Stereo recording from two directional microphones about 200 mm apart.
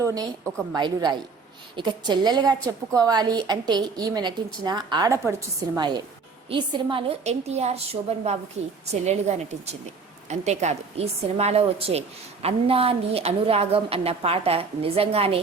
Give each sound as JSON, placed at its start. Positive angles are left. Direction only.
{"t": 0.0, "sound": "a woman's voice", "side_deg": -15}